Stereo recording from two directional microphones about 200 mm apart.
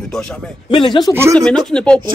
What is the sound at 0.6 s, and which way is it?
Speech, 25° left (ahead or behind).